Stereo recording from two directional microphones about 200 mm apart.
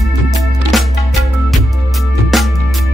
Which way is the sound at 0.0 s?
Centre (ahead or behind).